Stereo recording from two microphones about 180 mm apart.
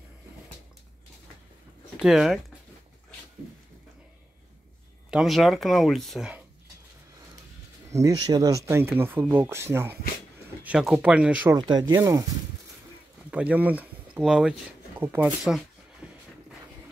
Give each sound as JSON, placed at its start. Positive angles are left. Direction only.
{"t": 2.0, "sound": "speech", "side_deg": 0}
{"t": 5.1, "sound": "speech", "side_deg": 0}
{"t": 7.9, "sound": "speech", "side_deg": -20}
{"t": 11.5, "sound": "speech", "side_deg": -25}
{"t": 13.3, "sound": "speech", "side_deg": -10}
{"t": 15.0, "sound": "zipper", "side_deg": -10}